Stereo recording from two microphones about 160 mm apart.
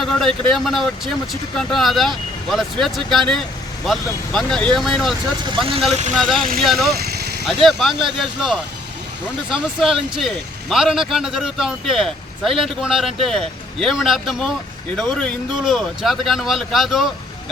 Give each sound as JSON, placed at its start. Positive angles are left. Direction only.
{"t": 0.0, "sound": "speech", "side_deg": 0}
{"t": 5.5, "sound": "speech", "side_deg": -35}
{"t": 6.1, "sound": "speech", "side_deg": 0}
{"t": 7.0, "sound": "vehicle", "side_deg": -85}
{"t": 7.4, "sound": "speech", "side_deg": 0}